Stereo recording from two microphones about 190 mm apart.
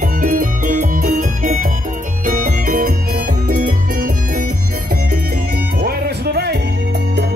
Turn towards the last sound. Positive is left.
turn(degrees=-55)  # may be behind; listen again after turning